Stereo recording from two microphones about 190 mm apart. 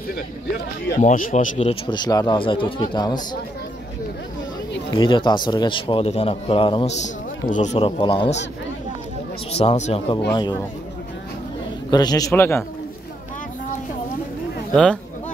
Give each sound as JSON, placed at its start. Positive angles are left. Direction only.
{"t": 0.9, "sound": "a man's voice", "side_deg": 40}
{"t": 1.9, "sound": "a man's voice", "side_deg": 20}
{"t": 4.9, "sound": "a man's voice", "side_deg": 25}
{"t": 7.0, "sound": "a man's voice", "side_deg": 40}
{"t": 9.5, "sound": "a man's voice", "side_deg": 35}
{"t": 11.9, "sound": "a man's voice", "side_deg": 20}